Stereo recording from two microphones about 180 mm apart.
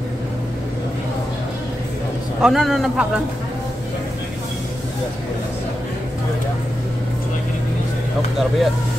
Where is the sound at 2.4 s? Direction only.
Centre (ahead or behind).